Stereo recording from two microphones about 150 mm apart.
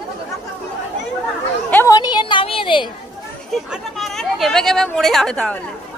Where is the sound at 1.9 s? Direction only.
30° left (ahead or behind).